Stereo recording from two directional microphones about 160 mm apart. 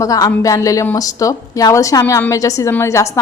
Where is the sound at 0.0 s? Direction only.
20° left (ahead or behind).